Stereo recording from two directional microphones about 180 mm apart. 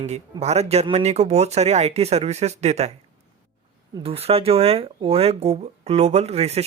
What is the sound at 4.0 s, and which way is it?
Speech, 30° right (ahead or behind).